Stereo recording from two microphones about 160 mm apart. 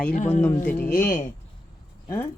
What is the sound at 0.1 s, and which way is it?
Speech, 50° left (ahead or behind).